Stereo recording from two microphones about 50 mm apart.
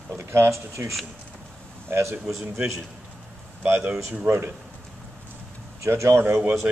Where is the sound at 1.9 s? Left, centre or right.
Right.